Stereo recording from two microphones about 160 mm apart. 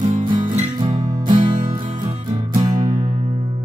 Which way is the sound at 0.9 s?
25° right (ahead or behind).